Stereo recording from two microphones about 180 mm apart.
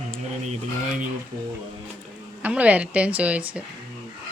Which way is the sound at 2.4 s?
10° right (ahead or behind).